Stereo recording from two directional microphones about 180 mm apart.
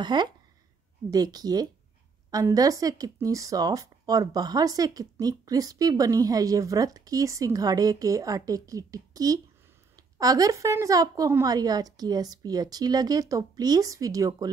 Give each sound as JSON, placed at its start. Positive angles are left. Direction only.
{"t": 0.0, "sound": "a woman's voice", "side_deg": -25}